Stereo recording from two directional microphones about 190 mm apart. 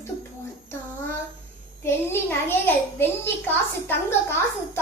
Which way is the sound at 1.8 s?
10° left (ahead or behind).